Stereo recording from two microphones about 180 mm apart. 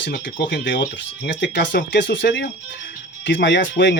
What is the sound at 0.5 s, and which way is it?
Speech, 80° left.